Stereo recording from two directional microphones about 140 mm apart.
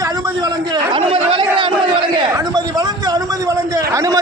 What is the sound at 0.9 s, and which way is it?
Chatter, 40° right (ahead or behind).